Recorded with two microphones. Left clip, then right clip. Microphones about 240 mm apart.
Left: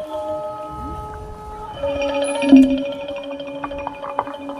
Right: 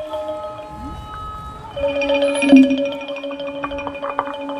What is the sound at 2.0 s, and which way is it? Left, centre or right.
Music, right.